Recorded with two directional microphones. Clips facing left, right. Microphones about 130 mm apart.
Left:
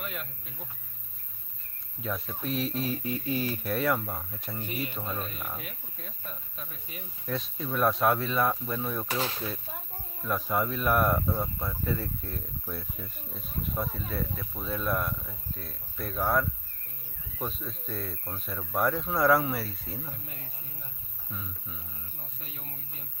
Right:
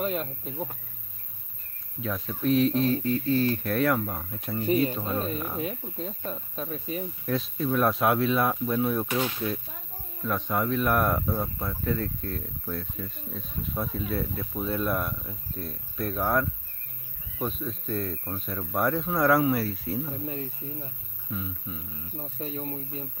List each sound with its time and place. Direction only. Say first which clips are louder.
0.0 s speech: right 10 dB; 35° right (ahead or behind)
2.0 s speech: right 3 dB; centre (ahead or behind)
5.6 s speech: right 12 dB; 25° right (ahead or behind)
7.2 s speech: right 5 dB; centre (ahead or behind)
10.2 s speech: right 1 dB; 5° left (ahead or behind)
20.1 s speech: right 11 dB; 30° right (ahead or behind)
21.3 s speech: right 7 dB; 5° right (ahead or behind)
22.2 s speech: right 16 dB; 35° right (ahead or behind)